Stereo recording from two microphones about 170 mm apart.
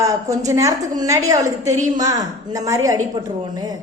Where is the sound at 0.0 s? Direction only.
20° right (ahead or behind).